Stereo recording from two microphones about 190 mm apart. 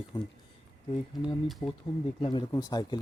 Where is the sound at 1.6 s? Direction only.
35° left (ahead or behind).